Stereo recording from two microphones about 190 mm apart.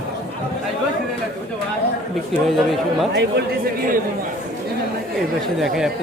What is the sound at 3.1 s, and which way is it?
Speech, 60° right (ahead or behind).